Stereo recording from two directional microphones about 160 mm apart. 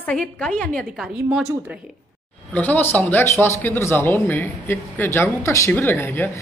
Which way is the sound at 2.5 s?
10° left (ahead or behind).